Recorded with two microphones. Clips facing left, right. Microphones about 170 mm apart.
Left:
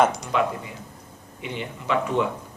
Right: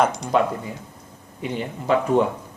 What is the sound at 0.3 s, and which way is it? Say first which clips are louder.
A man's voice: right 4 dB; 40° right (ahead or behind).